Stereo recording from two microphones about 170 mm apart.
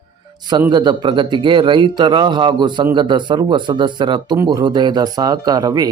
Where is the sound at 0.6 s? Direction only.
25° right (ahead or behind).